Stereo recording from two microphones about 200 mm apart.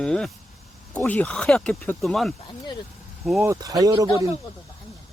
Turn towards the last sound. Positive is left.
turn(degrees=-20)  # may be behind; listen again after turning